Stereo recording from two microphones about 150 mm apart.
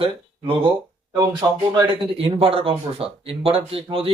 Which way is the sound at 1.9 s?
35° right (ahead or behind).